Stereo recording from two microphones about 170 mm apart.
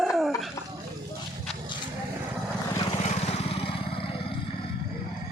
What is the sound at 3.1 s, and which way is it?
Vehicle, 35° left (ahead or behind).